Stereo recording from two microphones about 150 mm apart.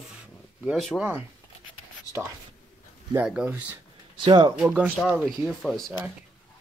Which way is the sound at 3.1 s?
10° right (ahead or behind).